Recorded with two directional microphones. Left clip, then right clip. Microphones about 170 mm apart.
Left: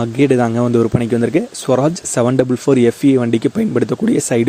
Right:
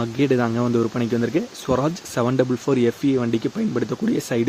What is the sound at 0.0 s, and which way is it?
Speech, 40° left (ahead or behind).